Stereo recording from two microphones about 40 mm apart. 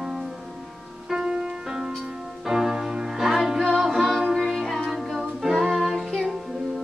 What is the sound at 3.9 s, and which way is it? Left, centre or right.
Music, centre.